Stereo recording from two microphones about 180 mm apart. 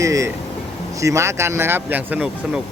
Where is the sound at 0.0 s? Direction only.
15° right (ahead or behind).